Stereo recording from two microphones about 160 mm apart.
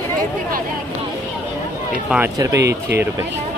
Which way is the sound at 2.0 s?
10° right (ahead or behind).